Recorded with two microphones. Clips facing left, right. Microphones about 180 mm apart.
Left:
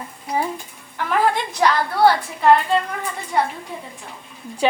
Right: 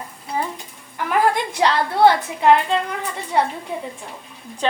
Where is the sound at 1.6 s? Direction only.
25° right (ahead or behind).